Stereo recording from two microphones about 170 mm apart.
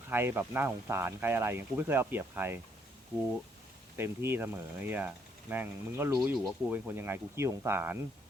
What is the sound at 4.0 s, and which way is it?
Speech, 15° right (ahead or behind).